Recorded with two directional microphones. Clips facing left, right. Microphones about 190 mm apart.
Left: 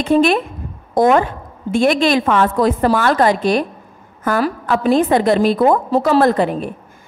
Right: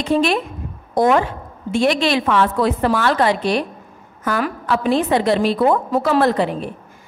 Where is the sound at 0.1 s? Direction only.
50° left (ahead or behind).